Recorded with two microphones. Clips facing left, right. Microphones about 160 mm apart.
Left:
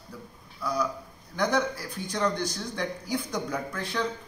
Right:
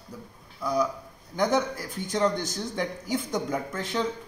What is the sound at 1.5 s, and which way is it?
Speech, 45° right (ahead or behind).